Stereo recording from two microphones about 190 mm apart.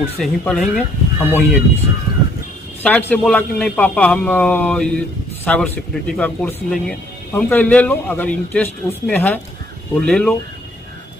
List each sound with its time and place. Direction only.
0.2 s speech: 5° left (ahead or behind)
2.8 s a man's voice: 10° left (ahead or behind)